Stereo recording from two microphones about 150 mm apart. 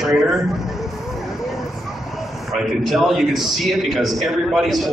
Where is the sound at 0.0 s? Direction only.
Centre (ahead or behind).